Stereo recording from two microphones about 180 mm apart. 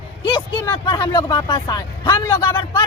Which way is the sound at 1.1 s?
25° left (ahead or behind).